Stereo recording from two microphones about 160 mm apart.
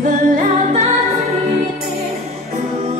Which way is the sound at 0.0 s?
50° right (ahead or behind).